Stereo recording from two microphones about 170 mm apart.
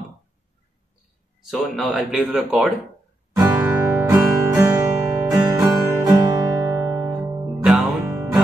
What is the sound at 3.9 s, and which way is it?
Music, 10° right (ahead or behind).